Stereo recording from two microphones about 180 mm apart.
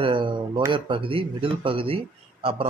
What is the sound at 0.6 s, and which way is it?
Speech, 25° right (ahead or behind).